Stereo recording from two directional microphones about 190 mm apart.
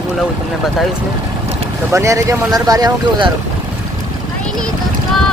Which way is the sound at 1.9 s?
15° right (ahead or behind).